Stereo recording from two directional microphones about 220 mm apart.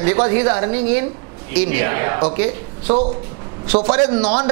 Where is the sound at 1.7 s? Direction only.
15° right (ahead or behind).